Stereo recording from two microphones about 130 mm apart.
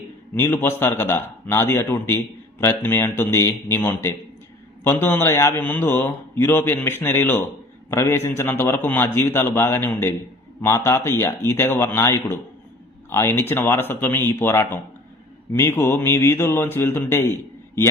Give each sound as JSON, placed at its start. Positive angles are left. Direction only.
{"t": 0.3, "sound": "a man's voice", "side_deg": 20}